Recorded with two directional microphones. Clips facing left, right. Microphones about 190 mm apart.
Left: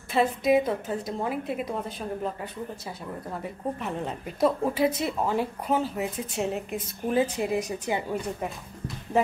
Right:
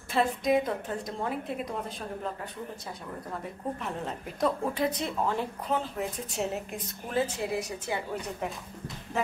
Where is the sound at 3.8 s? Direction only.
Centre (ahead or behind).